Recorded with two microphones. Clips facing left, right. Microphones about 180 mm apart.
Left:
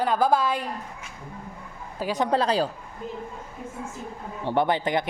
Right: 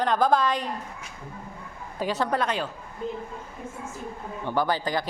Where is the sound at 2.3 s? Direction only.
30° left (ahead or behind).